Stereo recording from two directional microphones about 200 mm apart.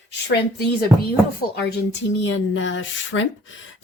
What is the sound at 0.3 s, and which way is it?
Speech, 55° left (ahead or behind).